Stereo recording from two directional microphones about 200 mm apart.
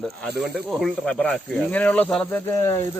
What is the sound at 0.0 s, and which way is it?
Speech, centre (ahead or behind).